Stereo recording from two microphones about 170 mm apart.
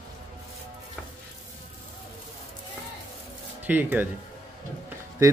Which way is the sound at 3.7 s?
10° right (ahead or behind).